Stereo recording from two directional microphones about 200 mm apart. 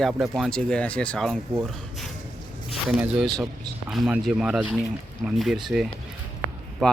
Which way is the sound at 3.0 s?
5° right (ahead or behind).